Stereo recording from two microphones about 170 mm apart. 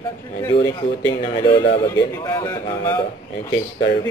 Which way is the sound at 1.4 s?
30° left (ahead or behind).